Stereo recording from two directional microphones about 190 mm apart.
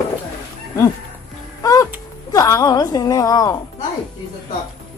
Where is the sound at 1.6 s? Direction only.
20° left (ahead or behind).